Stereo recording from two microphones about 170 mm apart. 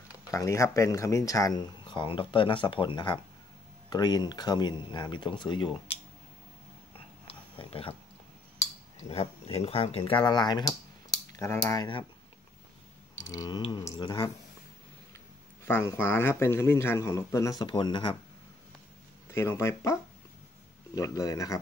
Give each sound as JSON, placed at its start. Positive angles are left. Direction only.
{"t": 0.3, "sound": "speech", "side_deg": 20}
{"t": 7.5, "sound": "speech", "side_deg": 30}
{"t": 9.1, "sound": "speech", "side_deg": 35}
{"t": 13.3, "sound": "speech", "side_deg": 20}
{"t": 15.6, "sound": "speech", "side_deg": 15}
{"t": 19.3, "sound": "speech", "side_deg": 15}